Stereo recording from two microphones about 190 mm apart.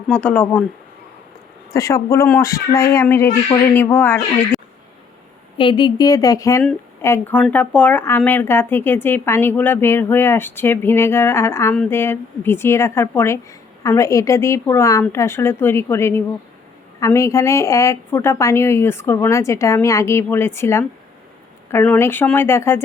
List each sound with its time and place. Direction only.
0.1 s speech: 5° left (ahead or behind)
1.7 s speech: 15° left (ahead or behind)
5.5 s a woman's voice: 25° left (ahead or behind)